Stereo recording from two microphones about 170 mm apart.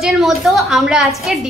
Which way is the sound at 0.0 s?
Centre (ahead or behind).